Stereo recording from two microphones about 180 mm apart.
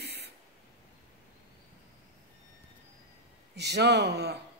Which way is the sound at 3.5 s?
70° right (ahead or behind).